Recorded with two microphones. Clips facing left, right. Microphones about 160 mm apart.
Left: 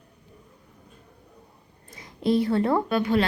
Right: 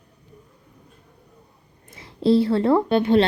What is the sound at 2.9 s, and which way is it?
Speech, 25° right (ahead or behind).